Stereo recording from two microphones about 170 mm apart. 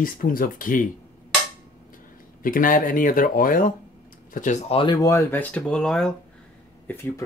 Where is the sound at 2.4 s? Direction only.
55° left (ahead or behind).